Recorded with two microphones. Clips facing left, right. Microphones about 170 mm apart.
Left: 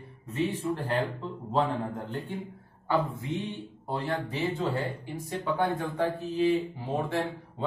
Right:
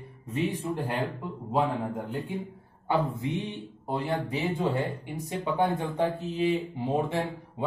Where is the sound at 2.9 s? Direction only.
20° right (ahead or behind).